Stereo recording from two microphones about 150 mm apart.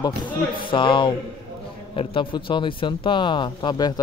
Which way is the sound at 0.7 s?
35° left (ahead or behind).